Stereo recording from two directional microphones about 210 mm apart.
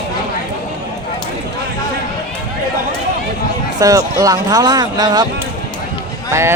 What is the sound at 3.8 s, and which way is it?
Speech, 15° right (ahead or behind).